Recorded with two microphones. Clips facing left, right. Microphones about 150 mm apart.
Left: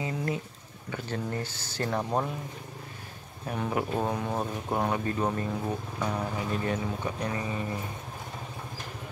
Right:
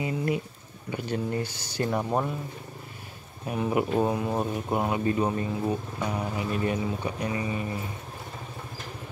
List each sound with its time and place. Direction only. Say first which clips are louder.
0.0 s a sound: right 4 dB; 15° right (ahead or behind)
0.9 s speech: right 4 dB; 15° right (ahead or behind)
3.4 s speech: right 4 dB; 10° right (ahead or behind)